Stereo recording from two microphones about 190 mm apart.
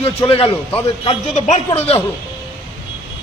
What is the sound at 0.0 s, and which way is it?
A man's voice, 30° left (ahead or behind).